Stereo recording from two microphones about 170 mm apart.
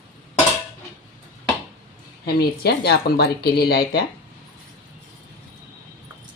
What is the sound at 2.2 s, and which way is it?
Speech, 70° left (ahead or behind).